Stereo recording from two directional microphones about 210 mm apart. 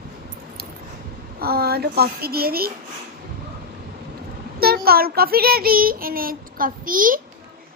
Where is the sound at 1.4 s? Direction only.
45° right (ahead or behind).